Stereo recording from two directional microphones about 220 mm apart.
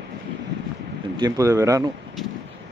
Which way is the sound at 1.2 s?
15° right (ahead or behind).